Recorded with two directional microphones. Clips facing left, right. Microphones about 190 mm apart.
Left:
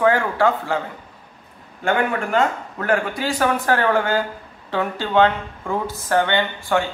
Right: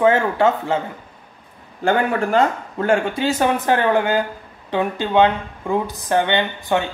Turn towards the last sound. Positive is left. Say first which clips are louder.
# right 1 dB
turn(degrees=-20)  # may be behind; listen again after turning